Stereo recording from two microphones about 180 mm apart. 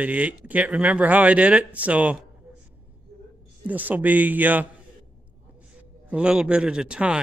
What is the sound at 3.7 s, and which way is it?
Speech, 10° right (ahead or behind).